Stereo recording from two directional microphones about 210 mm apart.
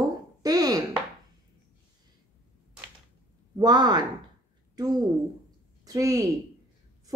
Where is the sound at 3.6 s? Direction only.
20° right (ahead or behind).